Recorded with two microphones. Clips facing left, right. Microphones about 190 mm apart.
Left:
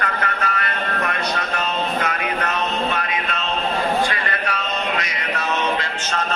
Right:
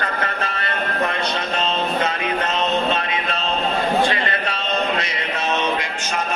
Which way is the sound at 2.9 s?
25° right (ahead or behind).